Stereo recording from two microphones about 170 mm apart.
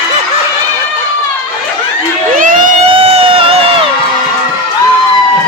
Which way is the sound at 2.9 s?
35° right (ahead or behind).